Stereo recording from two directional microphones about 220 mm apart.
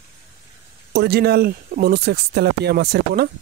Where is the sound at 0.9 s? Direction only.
45° right (ahead or behind).